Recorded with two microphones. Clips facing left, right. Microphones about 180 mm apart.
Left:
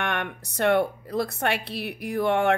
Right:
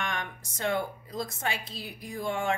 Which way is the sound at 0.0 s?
65° left (ahead or behind).